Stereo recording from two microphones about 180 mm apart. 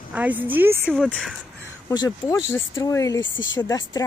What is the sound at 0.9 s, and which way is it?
Speech, centre (ahead or behind).